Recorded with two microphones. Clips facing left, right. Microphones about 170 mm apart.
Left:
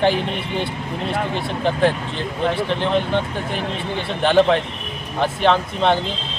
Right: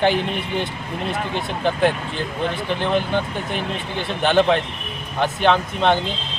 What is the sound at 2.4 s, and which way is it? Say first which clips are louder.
Speech: left 5 dB; 30° left (ahead or behind).